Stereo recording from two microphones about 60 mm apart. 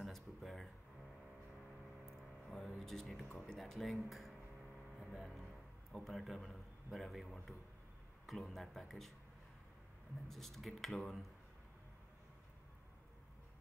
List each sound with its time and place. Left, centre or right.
0.0 s a sound: centre
2.0 s a sound: centre
3.3 s a man's voice: centre
5.0 s music: centre
5.9 s a man's voice: centre
10.2 s a man's voice: centre